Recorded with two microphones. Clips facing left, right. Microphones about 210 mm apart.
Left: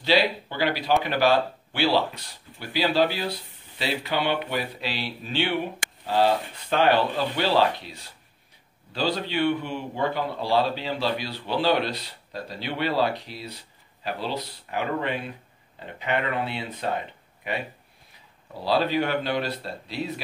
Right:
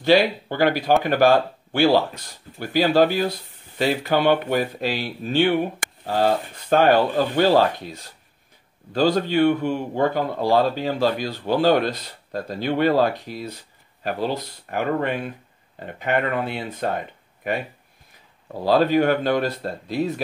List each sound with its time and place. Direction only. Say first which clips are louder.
0.0 s speech: right 5 dB; 50° right (ahead or behind)